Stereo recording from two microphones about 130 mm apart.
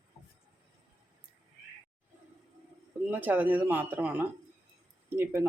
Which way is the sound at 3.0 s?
15° right (ahead or behind).